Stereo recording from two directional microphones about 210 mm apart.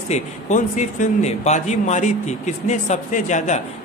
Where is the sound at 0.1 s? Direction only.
35° left (ahead or behind).